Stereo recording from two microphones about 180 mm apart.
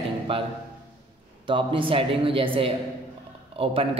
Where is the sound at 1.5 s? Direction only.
30° right (ahead or behind).